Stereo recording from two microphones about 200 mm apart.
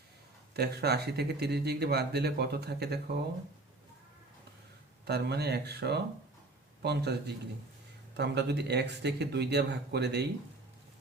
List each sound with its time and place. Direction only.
0.5 s speech: 55° right (ahead or behind)
5.0 s speech: 55° right (ahead or behind)